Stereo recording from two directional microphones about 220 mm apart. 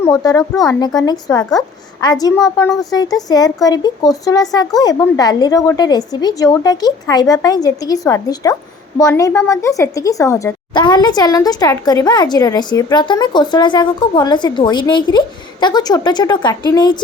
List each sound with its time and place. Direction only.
0.0 s a woman's voice: 15° left (ahead or behind)